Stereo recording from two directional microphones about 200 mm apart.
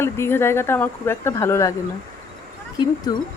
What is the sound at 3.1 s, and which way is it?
Speech, 20° left (ahead or behind).